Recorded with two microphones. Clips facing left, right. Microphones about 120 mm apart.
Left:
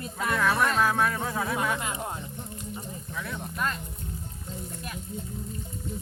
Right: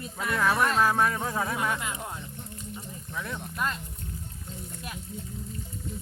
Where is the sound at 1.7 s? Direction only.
30° left (ahead or behind).